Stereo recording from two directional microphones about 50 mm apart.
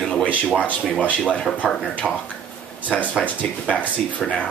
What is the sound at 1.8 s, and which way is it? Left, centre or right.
Speech, left.